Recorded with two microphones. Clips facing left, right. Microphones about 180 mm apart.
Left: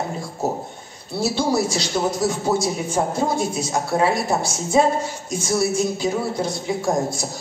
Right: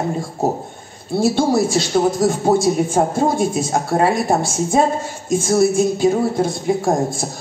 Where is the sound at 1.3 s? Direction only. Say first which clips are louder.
Right 5 dB; 50° right (ahead or behind).